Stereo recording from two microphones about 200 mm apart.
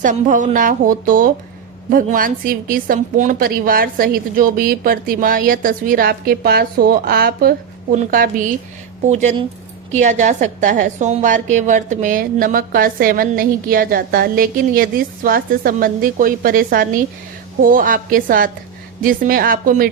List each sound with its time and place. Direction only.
0.0 s a woman's voice: 40° right (ahead or behind)